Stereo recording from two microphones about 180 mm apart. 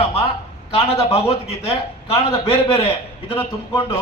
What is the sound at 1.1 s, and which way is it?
A man's voice, 35° left (ahead or behind).